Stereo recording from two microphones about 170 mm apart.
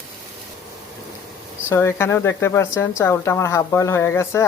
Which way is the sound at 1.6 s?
15° left (ahead or behind).